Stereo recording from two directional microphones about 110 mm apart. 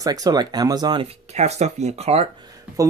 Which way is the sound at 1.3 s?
85° right.